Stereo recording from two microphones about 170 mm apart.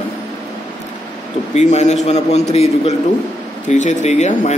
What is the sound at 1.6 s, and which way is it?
A man's voice, 40° left (ahead or behind).